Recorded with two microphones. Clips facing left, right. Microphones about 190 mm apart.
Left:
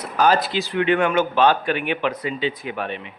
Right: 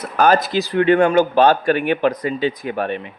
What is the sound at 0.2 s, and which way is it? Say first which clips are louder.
Speech: right 3 dB; 50° right (ahead or behind).